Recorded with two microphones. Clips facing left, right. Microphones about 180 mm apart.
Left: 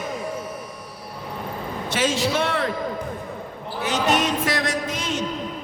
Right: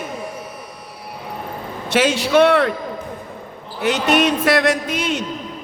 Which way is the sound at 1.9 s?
70° right (ahead or behind).